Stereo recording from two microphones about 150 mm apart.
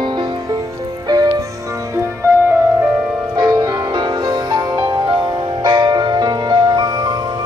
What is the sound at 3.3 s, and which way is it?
Music, 25° right (ahead or behind).